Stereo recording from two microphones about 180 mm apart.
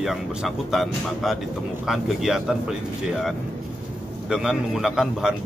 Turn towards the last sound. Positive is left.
turn(degrees=-5)  # may be behind; listen again after turning